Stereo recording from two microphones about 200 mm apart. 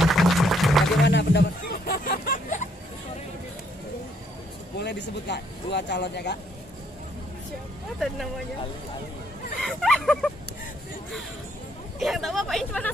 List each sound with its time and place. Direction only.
0.0 s music: centre (ahead or behind)
1.0 s music: 60° left (ahead or behind); by 2.7 s 40° left (ahead or behind)
4.7 s speech: 60° left (ahead or behind)
9.6 s speech: centre (ahead or behind)
12.0 s speech: centre (ahead or behind)